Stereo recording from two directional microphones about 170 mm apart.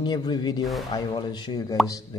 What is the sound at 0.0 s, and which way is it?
A man's voice, 25° left (ahead or behind).